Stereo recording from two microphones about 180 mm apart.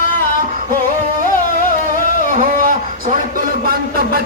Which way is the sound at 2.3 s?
45° right (ahead or behind).